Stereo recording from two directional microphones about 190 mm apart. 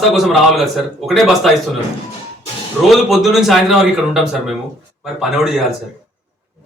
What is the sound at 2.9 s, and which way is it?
A man's voice, centre (ahead or behind).